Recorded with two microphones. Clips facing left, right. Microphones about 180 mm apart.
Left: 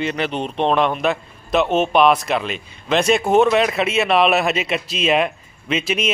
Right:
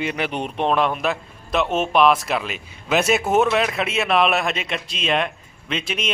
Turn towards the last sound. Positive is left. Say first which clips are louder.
# left 5 dB
turn(degrees=5)  # may be behind; listen again after turning